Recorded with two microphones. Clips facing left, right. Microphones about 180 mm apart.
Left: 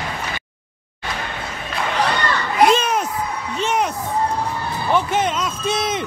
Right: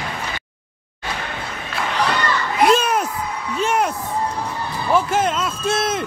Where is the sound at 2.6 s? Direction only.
5° right (ahead or behind).